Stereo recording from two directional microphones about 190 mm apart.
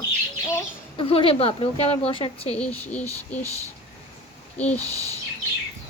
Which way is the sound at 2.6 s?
5° left (ahead or behind).